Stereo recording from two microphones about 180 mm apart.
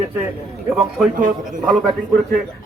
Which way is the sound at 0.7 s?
Centre (ahead or behind).